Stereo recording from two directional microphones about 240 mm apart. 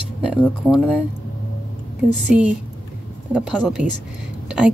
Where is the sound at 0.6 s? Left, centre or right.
Centre.